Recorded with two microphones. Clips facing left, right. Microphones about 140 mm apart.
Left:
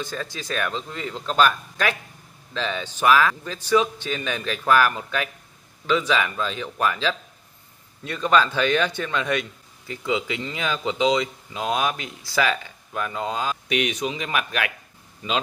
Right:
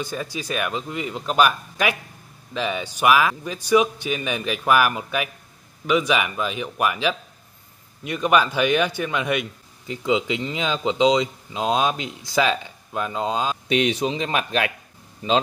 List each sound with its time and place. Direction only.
0.0 s a man's voice: 10° right (ahead or behind); by 14.7 s 30° right (ahead or behind)